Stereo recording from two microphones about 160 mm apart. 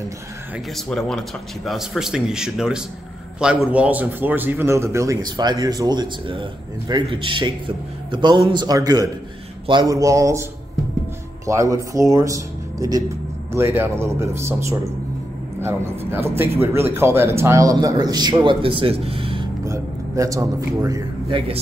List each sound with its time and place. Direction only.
0.7 s a man's voice: 5° left (ahead or behind); by 10.4 s 20° right (ahead or behind)
11.4 s a man's voice: 20° right (ahead or behind)
19.6 s a man's voice: 20° right (ahead or behind)